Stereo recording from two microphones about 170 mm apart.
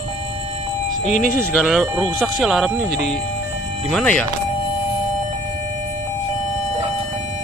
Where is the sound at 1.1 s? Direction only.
55° left (ahead or behind).